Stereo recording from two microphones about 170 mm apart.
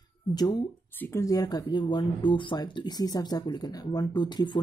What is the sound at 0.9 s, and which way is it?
Speech, 15° left (ahead or behind).